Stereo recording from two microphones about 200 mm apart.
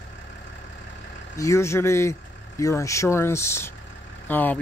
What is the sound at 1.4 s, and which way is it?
Speech, 15° left (ahead or behind).